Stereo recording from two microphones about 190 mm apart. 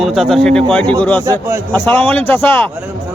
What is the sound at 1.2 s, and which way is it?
Speech, 15° right (ahead or behind).